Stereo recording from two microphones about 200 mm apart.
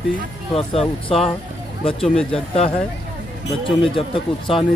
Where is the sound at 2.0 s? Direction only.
5° left (ahead or behind).